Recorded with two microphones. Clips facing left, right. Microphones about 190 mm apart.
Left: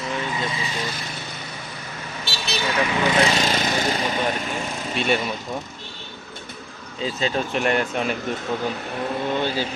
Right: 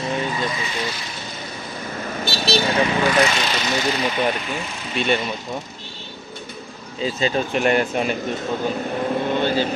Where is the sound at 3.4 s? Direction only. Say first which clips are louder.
Even; 45° left (ahead or behind).